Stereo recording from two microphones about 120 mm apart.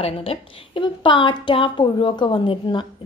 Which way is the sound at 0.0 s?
50° left (ahead or behind).